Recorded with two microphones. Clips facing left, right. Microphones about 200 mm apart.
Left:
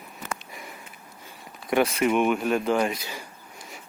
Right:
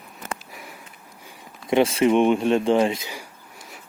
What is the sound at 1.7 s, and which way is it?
Speech, 25° right (ahead or behind).